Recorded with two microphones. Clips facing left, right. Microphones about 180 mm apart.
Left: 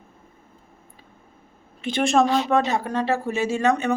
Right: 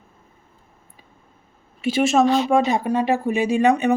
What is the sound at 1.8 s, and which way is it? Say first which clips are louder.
Speech: right 2 dB; 5° right (ahead or behind).